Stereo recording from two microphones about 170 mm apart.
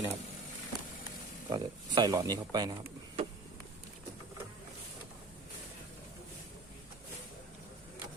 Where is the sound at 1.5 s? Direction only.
20° right (ahead or behind).